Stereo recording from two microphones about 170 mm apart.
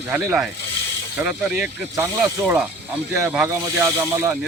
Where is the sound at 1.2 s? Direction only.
10° right (ahead or behind).